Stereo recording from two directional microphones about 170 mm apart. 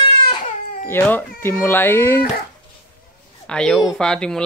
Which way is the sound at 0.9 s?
10° left (ahead or behind).